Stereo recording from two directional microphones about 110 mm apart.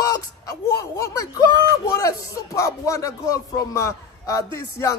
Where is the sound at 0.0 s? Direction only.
35° left (ahead or behind).